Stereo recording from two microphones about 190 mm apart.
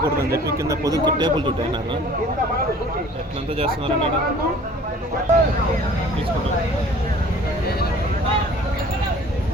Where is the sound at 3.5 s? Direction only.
30° right (ahead or behind).